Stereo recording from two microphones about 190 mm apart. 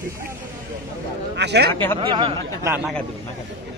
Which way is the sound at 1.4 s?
60° right (ahead or behind).